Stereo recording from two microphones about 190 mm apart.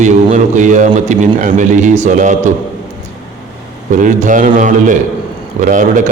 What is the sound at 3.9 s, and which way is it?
A man's voice, 40° right (ahead or behind).